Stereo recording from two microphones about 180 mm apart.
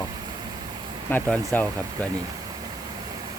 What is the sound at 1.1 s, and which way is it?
Speech, 10° left (ahead or behind).